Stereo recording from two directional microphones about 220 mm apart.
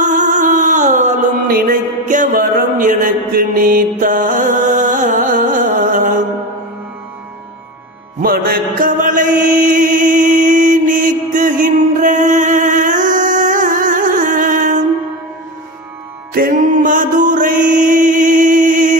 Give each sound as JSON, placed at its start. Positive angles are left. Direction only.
{"t": 0.0, "sound": "music", "side_deg": -35}
{"t": 8.2, "sound": "chant", "side_deg": -40}
{"t": 16.3, "sound": "music", "side_deg": -40}